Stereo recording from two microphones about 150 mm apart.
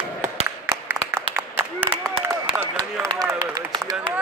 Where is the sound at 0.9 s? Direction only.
15° right (ahead or behind).